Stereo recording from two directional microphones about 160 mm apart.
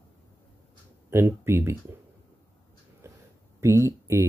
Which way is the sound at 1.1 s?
15° right (ahead or behind).